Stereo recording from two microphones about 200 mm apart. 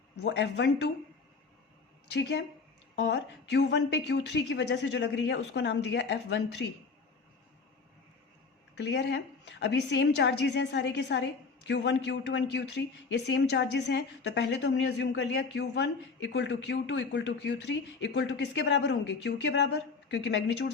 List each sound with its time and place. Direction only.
0.2 s a woman's voice: 60° left (ahead or behind)
2.1 s a woman's voice: 60° left (ahead or behind)
8.7 s a woman's voice: 60° left (ahead or behind)